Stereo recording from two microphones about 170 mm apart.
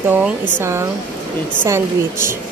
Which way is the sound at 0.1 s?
10° right (ahead or behind).